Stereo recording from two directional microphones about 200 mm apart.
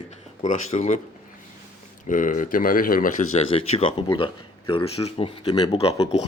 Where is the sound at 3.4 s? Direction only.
30° left (ahead or behind).